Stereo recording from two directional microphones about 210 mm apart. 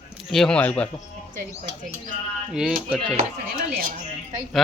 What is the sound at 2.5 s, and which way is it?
Speech, 5° right (ahead or behind).